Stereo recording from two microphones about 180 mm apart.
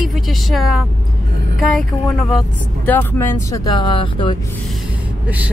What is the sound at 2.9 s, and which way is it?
Speech, 10° left (ahead or behind).